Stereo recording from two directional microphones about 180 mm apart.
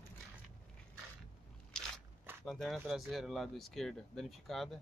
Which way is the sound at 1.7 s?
5° left (ahead or behind).